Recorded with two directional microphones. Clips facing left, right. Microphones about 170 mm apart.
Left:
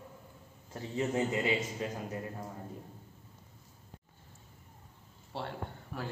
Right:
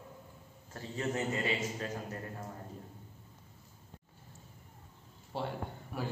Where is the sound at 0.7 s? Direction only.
20° left (ahead or behind).